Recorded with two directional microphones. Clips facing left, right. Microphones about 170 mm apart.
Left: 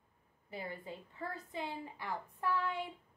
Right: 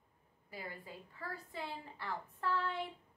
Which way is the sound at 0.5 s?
25° left (ahead or behind).